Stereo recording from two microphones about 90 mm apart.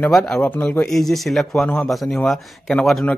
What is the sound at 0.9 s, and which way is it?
A man's voice, centre (ahead or behind).